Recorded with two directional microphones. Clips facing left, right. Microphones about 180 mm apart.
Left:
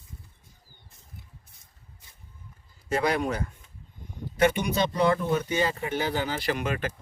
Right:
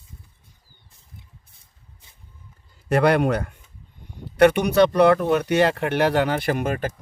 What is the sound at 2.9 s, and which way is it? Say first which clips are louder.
Speech: right 8 dB; 65° right (ahead or behind).